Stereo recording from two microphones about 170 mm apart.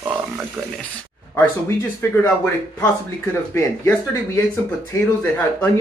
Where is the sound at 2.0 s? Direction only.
15° left (ahead or behind).